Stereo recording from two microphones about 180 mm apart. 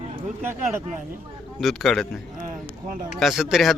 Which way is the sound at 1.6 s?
Centre (ahead or behind).